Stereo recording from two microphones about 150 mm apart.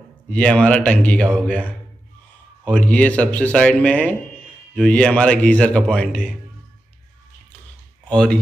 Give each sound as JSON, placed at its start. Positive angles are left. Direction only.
{"t": 0.3, "sound": "speech", "side_deg": 10}
{"t": 8.1, "sound": "speech", "side_deg": 5}